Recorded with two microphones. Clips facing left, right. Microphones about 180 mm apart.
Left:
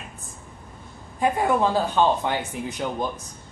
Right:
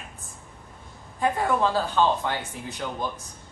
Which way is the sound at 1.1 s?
15° left (ahead or behind).